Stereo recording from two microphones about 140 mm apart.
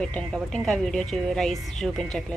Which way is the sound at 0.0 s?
10° left (ahead or behind).